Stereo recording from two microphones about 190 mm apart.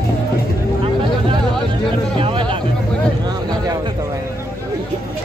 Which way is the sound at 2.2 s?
25° right (ahead or behind).